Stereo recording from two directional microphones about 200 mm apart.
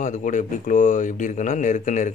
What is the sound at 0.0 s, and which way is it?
Speech, 40° left (ahead or behind).